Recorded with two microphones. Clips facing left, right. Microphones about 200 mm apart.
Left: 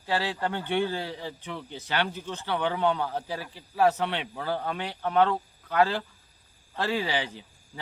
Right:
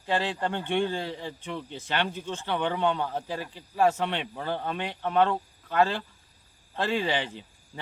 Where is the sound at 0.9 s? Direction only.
10° left (ahead or behind).